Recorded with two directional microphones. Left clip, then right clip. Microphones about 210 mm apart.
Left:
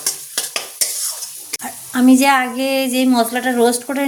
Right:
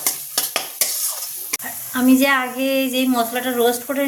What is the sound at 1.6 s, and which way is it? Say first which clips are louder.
Speech: left 5 dB; 55° left (ahead or behind).